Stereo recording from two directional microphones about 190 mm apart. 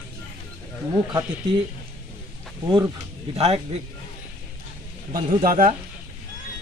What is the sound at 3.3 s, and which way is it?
Speech, 30° right (ahead or behind).